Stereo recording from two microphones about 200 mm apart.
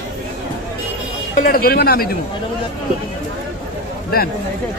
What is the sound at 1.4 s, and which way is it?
Speech, 45° left (ahead or behind).